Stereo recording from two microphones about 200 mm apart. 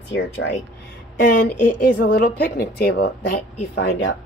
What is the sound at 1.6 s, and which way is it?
A woman's voice, 45° left (ahead or behind).